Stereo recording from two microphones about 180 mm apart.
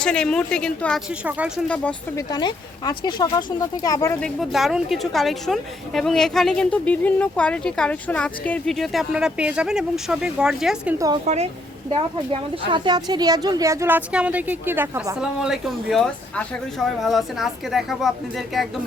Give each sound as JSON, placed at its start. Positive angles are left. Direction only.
{"t": 0.0, "sound": "a woman's voice", "side_deg": 5}
{"t": 1.2, "sound": "speech", "side_deg": -10}
{"t": 1.6, "sound": "speech", "side_deg": 5}
{"t": 2.1, "sound": "speech", "side_deg": 25}
{"t": 4.2, "sound": "a woman's voice", "side_deg": 0}
{"t": 12.3, "sound": "a woman's voice", "side_deg": -25}